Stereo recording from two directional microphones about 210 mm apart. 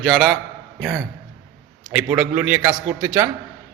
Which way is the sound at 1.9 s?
5° right (ahead or behind).